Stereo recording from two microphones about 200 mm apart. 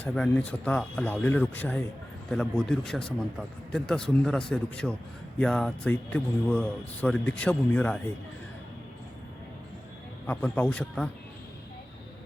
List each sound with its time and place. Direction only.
0.0 s a man's voice: 5° left (ahead or behind)
10.2 s a man's voice: 5° left (ahead or behind)